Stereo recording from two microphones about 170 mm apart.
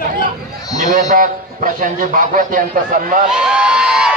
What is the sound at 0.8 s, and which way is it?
A man's voice, 55° right (ahead or behind).